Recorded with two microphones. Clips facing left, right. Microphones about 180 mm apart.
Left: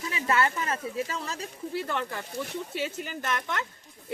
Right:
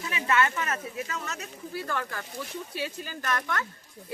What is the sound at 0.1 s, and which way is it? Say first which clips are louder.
Speech: right 1 dB; 35° left (ahead or behind).